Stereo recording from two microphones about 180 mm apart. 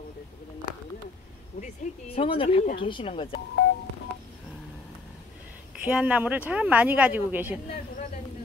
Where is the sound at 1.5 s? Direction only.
35° left (ahead or behind).